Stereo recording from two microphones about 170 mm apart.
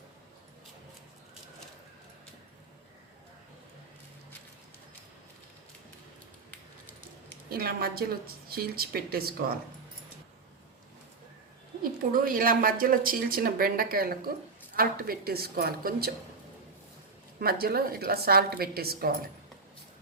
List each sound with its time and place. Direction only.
7.5 s speech: 60° right (ahead or behind)
11.8 s speech: 55° right (ahead or behind)
17.4 s speech: 65° right (ahead or behind)